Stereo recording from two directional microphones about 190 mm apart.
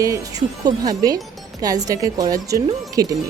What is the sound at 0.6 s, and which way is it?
Speech, 20° right (ahead or behind).